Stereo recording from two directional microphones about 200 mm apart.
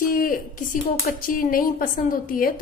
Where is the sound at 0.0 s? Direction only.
45° left (ahead or behind).